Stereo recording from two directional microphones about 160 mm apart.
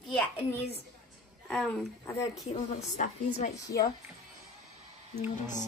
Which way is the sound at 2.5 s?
45° left (ahead or behind).